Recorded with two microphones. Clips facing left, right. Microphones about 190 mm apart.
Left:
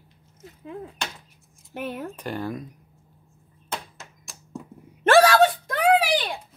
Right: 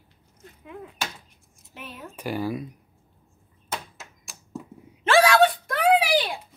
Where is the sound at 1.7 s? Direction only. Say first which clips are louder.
Left 9 dB; 60° left (ahead or behind).